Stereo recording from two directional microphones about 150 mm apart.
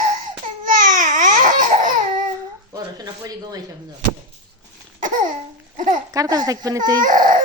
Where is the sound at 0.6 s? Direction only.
65° right (ahead or behind).